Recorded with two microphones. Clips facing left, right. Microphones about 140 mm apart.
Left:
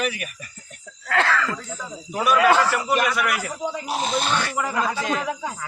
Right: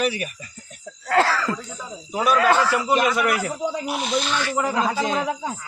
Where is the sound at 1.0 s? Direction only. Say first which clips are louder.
Right 2 dB; 35° right (ahead or behind).